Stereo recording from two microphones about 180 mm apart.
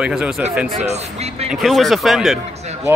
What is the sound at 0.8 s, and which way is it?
Speech, 40° right (ahead or behind).